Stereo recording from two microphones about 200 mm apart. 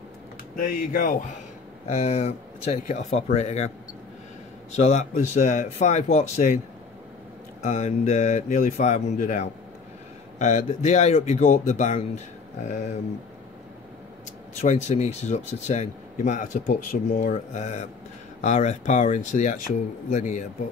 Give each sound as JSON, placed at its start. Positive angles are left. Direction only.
{"t": 0.6, "sound": "speech", "side_deg": 40}
{"t": 4.7, "sound": "speech", "side_deg": 35}
{"t": 7.6, "sound": "speech", "side_deg": 35}
{"t": 14.6, "sound": "speech", "side_deg": 35}